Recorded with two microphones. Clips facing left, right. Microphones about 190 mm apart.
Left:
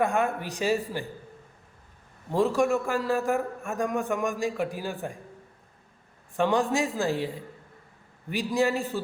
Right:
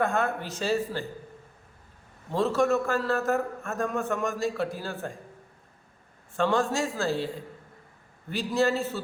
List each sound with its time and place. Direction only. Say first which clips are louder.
0.0 s a man's voice: left 1 dB; 15° left (ahead or behind)
2.3 s a man's voice: left 1 dB; 15° left (ahead or behind)
6.3 s a man's voice: left 1 dB; 15° left (ahead or behind)
8.3 s a man's voice: even; 15° left (ahead or behind)